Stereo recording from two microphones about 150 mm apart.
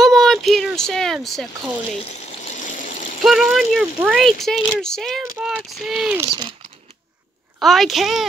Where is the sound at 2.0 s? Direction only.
45° left (ahead or behind).